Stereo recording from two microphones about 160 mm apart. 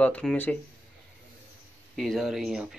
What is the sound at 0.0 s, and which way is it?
Speech, 5° left (ahead or behind).